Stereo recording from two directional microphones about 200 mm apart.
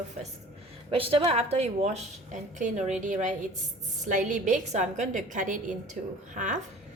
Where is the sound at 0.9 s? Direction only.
25° right (ahead or behind).